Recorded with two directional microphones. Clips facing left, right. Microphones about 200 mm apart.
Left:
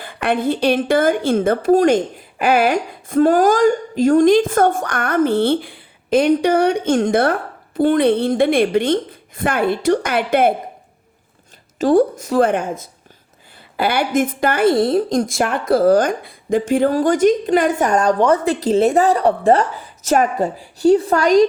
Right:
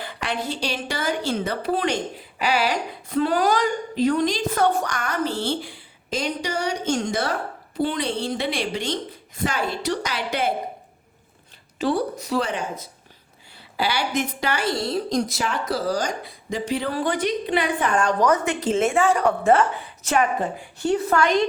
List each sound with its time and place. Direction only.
0.0 s a woman's voice: 50° left (ahead or behind)
11.8 s speech: 45° left (ahead or behind)